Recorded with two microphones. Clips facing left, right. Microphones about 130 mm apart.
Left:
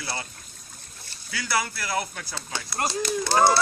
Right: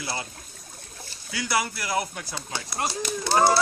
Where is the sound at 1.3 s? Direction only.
20° right (ahead or behind).